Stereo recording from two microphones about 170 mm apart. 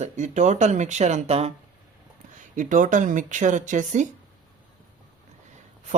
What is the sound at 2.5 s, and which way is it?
Speech, 50° right (ahead or behind).